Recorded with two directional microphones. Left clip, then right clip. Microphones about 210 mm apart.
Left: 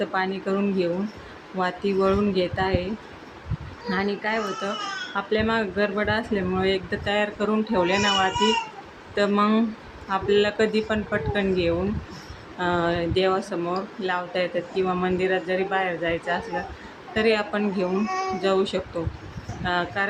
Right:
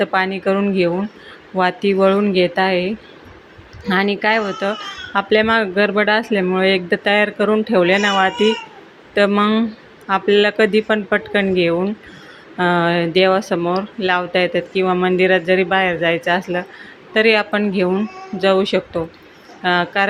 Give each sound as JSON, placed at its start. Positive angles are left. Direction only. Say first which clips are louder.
{"t": 0.0, "sound": "speech", "louder": "right 8 dB", "side_deg": -30}